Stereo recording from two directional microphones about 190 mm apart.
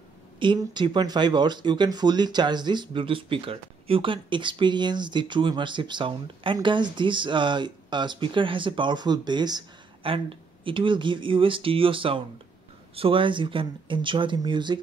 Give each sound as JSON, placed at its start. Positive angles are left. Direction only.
{"t": 0.4, "sound": "speech", "side_deg": -25}